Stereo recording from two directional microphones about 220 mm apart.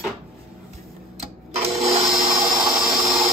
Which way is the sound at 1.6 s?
30° right (ahead or behind).